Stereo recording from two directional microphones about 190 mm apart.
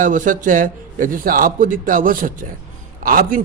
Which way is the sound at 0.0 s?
45° right (ahead or behind).